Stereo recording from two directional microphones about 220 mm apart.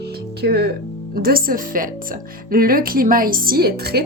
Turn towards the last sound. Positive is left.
turn(degrees=-45)  # may be behind; listen again after turning